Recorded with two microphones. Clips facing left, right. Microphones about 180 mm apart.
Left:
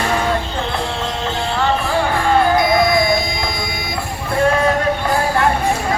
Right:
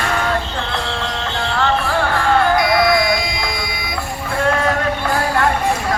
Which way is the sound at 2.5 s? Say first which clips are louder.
Left 1 dB; 25° left (ahead or behind).